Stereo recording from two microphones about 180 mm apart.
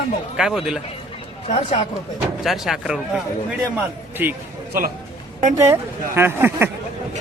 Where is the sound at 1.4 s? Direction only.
35° left (ahead or behind).